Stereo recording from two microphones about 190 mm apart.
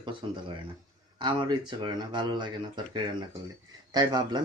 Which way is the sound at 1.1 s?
25° right (ahead or behind).